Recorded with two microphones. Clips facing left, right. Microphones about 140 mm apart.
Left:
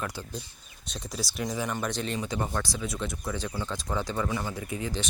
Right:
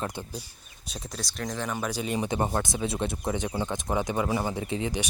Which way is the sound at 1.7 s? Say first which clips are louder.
Right 1 dB; 10° right (ahead or behind).